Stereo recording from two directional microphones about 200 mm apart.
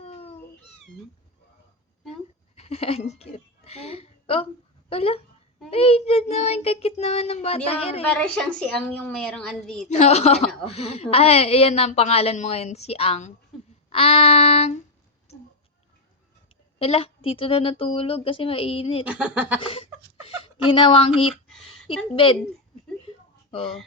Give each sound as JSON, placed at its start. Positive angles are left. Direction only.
{"t": 0.0, "sound": "cat", "side_deg": 30}
{"t": 2.6, "sound": "a sound", "side_deg": 30}
{"t": 4.9, "sound": "a woman's voice", "side_deg": 30}
{"t": 8.0, "sound": "a woman's voice", "side_deg": 5}
{"t": 9.9, "sound": "a woman's voice", "side_deg": 35}
{"t": 16.7, "sound": "a woman's voice", "side_deg": 30}
{"t": 19.0, "sound": "speech", "side_deg": -5}
{"t": 19.6, "sound": "a woman's voice", "side_deg": 25}
{"t": 22.1, "sound": "a woman's voice", "side_deg": 25}